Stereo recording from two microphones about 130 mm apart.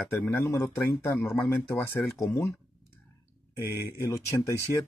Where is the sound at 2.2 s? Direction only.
20° left (ahead or behind).